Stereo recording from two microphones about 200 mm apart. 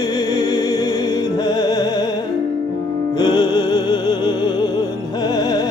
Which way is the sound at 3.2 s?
20° left (ahead or behind).